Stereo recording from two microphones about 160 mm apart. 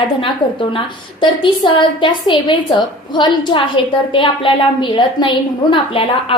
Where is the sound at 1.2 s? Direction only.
30° left (ahead or behind).